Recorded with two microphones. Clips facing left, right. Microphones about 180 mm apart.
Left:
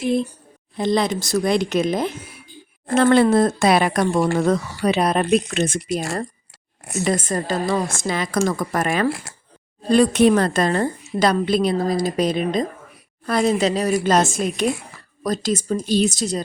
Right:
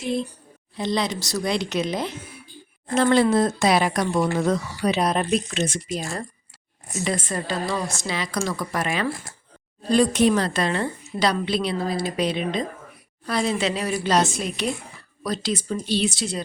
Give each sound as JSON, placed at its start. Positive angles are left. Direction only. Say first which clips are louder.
{"t": 0.8, "sound": "a woman's voice", "louder": "left 5 dB", "side_deg": 50}
{"t": 2.8, "sound": "speech", "louder": "left 4 dB", "side_deg": 60}
{"t": 7.0, "sound": "a woman's voice", "louder": "left 5 dB", "side_deg": 45}
{"t": 9.0, "sound": "speech", "louder": "left 5 dB", "side_deg": 80}
{"t": 9.9, "sound": "a woman's voice", "louder": "left 4 dB", "side_deg": 60}